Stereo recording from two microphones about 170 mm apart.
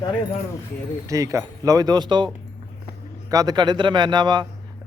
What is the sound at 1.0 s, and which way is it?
Speech, 20° right (ahead or behind).